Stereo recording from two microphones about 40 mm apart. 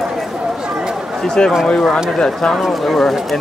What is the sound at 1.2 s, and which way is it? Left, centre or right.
Speech, centre.